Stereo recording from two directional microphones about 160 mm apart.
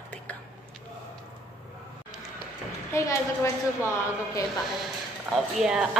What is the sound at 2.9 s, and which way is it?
Speech, 20° left (ahead or behind).